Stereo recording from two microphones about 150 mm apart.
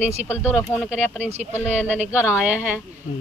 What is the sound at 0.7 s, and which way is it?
Speech, 10° left (ahead or behind).